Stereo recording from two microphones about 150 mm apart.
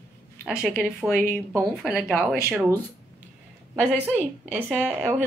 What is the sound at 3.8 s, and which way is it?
Speech, 10° right (ahead or behind).